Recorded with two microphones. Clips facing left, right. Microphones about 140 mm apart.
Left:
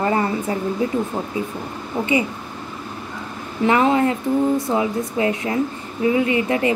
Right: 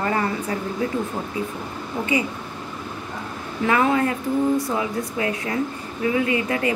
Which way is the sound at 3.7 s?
25° left (ahead or behind).